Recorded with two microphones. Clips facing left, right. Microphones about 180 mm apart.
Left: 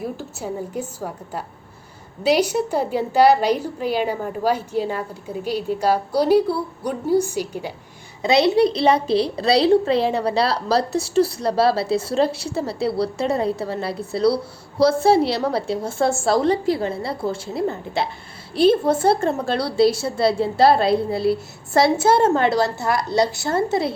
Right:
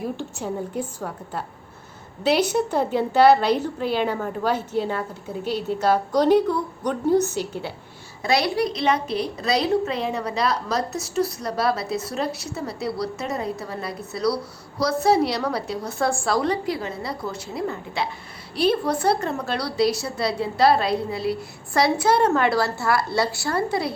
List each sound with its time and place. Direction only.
0.2 s a woman's voice: 10° left (ahead or behind); by 23.9 s 25° left (ahead or behind)